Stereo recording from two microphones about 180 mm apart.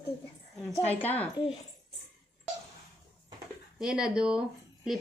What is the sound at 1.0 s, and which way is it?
Speech, 10° left (ahead or behind).